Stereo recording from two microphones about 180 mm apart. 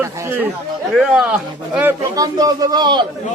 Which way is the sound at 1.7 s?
10° right (ahead or behind).